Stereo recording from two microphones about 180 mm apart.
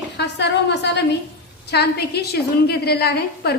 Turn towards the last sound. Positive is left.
turn(degrees=60)  # may be behind; listen again after turning